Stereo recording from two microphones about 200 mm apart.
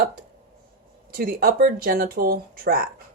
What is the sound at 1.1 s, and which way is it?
Speech, 50° right (ahead or behind).